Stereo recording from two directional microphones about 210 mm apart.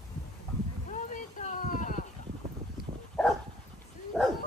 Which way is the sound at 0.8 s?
35° left (ahead or behind).